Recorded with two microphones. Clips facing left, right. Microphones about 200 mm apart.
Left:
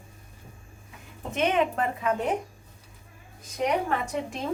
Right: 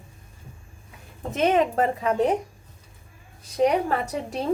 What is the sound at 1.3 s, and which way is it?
A woman's voice, 40° right (ahead or behind).